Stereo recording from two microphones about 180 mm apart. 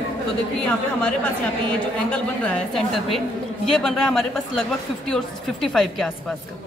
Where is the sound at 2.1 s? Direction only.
5° left (ahead or behind).